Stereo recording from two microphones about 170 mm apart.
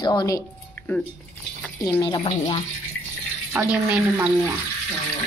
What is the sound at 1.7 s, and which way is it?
Speech, 20° left (ahead or behind).